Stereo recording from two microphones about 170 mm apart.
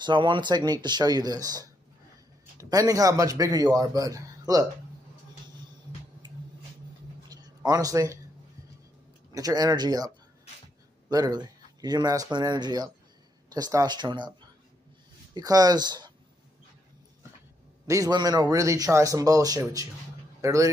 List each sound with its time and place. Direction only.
0.0 s a man's voice: 30° right (ahead or behind)
2.7 s a man's voice: 20° right (ahead or behind)
7.2 s a sound: 20° right (ahead or behind)
9.3 s a man's voice: 20° right (ahead or behind)
15.3 s a man's voice: 20° right (ahead or behind)
17.8 s a man's voice: 20° right (ahead or behind)